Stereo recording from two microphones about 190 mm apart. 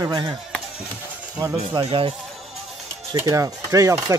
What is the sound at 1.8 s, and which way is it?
Speech, 30° right (ahead or behind).